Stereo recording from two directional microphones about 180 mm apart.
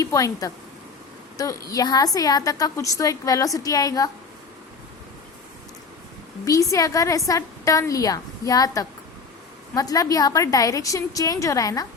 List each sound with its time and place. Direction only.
0.0 s a woman's voice: 20° left (ahead or behind)
6.4 s a woman's voice: 20° left (ahead or behind)